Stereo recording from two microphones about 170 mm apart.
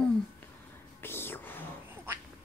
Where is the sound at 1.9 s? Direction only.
10° right (ahead or behind).